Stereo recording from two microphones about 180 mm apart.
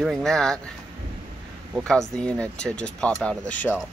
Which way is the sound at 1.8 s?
5° left (ahead or behind).